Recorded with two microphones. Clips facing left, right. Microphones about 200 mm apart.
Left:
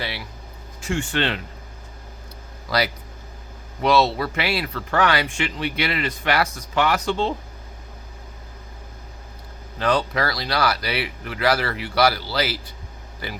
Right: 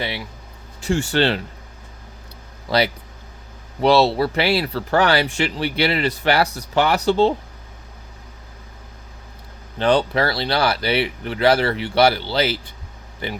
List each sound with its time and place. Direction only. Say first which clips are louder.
0.8 s speech: right 5 dB; 35° right (ahead or behind)
2.6 s speech: right 4 dB; 25° right (ahead or behind)
9.7 s speech: right 4 dB; 30° right (ahead or behind)